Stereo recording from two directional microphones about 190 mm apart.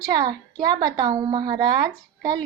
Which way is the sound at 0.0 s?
20° right (ahead or behind).